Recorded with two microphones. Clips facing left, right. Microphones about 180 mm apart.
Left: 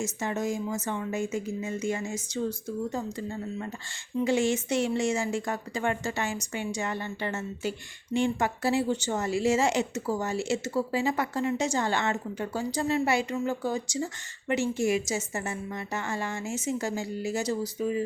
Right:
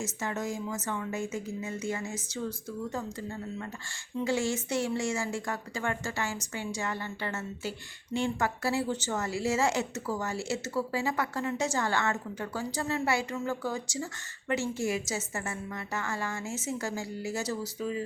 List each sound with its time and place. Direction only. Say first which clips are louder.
0.0 s a woman's voice: left 4 dB; 20° left (ahead or behind)